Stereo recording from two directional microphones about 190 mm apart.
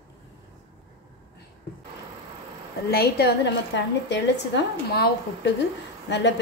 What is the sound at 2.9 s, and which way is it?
A woman's voice, 60° left (ahead or behind).